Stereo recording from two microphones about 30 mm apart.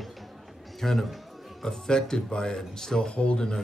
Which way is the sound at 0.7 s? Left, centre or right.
Centre.